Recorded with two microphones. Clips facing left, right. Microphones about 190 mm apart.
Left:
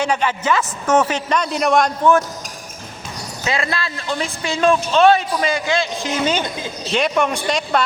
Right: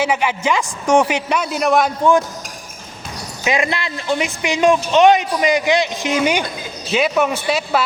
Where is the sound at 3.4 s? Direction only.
15° right (ahead or behind).